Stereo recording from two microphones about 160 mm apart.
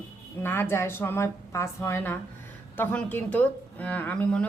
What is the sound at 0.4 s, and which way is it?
Speech, 15° left (ahead or behind).